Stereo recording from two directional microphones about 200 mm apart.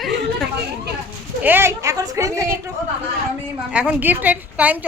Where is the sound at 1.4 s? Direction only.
10° right (ahead or behind).